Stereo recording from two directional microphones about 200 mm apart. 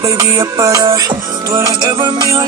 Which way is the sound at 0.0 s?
15° right (ahead or behind).